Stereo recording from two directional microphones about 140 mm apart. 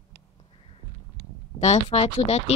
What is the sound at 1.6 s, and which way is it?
Speech, 50° left (ahead or behind).